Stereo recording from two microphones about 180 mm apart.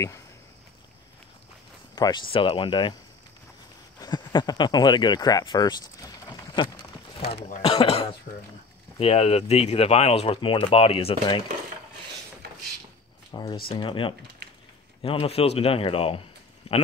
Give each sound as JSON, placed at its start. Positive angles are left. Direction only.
{"t": 2.0, "sound": "speech", "side_deg": 25}
{"t": 4.0, "sound": "speech", "side_deg": 25}
{"t": 7.2, "sound": "speech", "side_deg": 40}
{"t": 13.3, "sound": "speech", "side_deg": 25}
{"t": 16.6, "sound": "a sound", "side_deg": 35}